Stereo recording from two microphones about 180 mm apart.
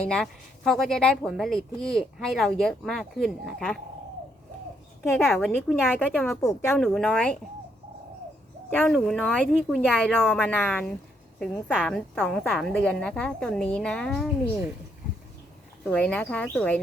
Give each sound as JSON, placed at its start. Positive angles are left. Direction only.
{"t": 0.1, "sound": "a woman's voice", "side_deg": 0}
{"t": 5.2, "sound": "a woman's voice", "side_deg": 10}
{"t": 6.4, "sound": "a woman's voice", "side_deg": 20}
{"t": 6.7, "sound": "a woman's voice", "side_deg": 0}
{"t": 8.8, "sound": "a woman's voice", "side_deg": 0}
{"t": 15.8, "sound": "a woman's voice", "side_deg": 5}